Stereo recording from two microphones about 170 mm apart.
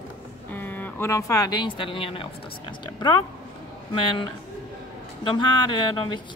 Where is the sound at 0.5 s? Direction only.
10° left (ahead or behind).